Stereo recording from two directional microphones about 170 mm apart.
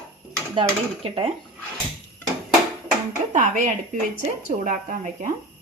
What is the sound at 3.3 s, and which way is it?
Speech, 45° right (ahead or behind).